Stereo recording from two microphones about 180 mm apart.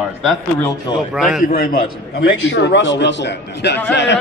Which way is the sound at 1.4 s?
55° left (ahead or behind).